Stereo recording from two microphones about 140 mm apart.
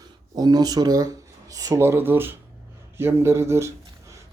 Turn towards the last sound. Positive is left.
turn(degrees=-20)  # may be behind; listen again after turning